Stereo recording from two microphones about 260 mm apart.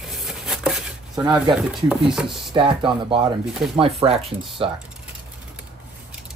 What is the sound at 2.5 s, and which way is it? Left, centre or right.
Speech, centre.